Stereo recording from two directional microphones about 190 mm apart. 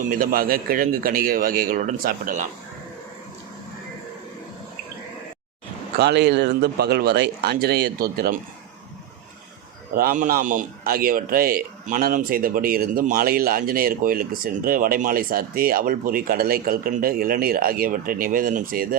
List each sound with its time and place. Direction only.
0.0 s a man's voice: 45° right (ahead or behind)
6.0 s speech: 60° right (ahead or behind)
9.9 s a man's voice: 50° right (ahead or behind)